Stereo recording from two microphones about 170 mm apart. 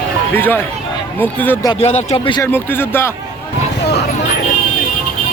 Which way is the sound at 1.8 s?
40° left (ahead or behind).